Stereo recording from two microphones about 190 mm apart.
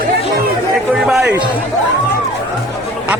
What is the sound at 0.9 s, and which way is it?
Speech, centre (ahead or behind).